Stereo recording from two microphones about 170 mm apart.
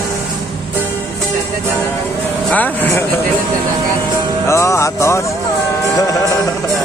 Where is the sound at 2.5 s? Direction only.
10° left (ahead or behind).